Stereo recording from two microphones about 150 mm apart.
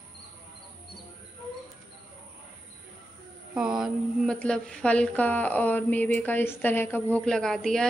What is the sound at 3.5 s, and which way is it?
Speech, 5° right (ahead or behind).